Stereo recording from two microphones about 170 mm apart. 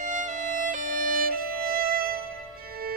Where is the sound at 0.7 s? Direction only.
55° right (ahead or behind).